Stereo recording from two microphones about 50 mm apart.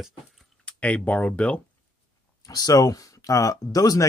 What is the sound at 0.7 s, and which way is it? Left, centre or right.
Speech, left.